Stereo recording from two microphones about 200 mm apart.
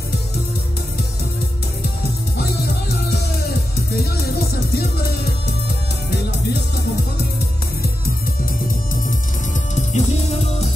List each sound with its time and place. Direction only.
2.3 s music: 55° left (ahead or behind)
9.8 s music: 35° left (ahead or behind)